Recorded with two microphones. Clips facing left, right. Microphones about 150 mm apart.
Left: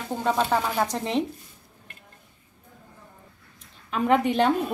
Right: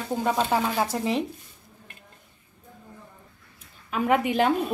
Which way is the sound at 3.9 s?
5° right (ahead or behind).